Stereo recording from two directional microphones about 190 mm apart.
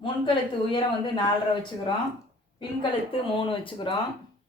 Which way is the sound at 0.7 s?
25° left (ahead or behind).